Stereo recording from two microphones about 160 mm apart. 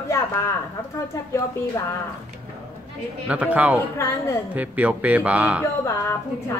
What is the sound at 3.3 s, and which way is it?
A man's voice, 10° right (ahead or behind).